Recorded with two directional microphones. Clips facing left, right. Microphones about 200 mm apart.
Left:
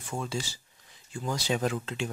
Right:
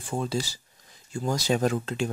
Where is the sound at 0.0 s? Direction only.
35° right (ahead or behind).